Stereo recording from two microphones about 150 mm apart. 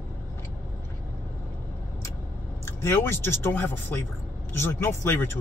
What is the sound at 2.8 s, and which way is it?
Speech, 15° left (ahead or behind).